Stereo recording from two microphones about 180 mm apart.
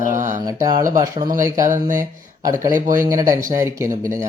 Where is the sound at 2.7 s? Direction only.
45° right (ahead or behind).